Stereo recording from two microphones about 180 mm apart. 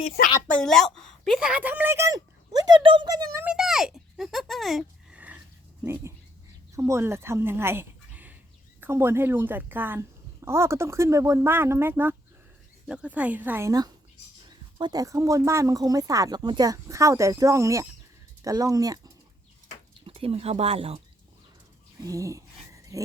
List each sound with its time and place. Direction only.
0.0 s speech: 40° left (ahead or behind)
0.3 s a woman's voice: 5° left (ahead or behind); by 3.2 s 25° right (ahead or behind)
3.3 s speech: 5° right (ahead or behind)
5.8 s dog: 15° right (ahead or behind)
6.7 s a woman's voice: 15° right (ahead or behind)
20.1 s speech: 30° right (ahead or behind)
22.0 s a sound: 20° right (ahead or behind)